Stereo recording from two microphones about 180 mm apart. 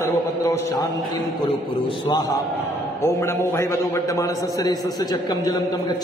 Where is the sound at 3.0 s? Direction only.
15° left (ahead or behind).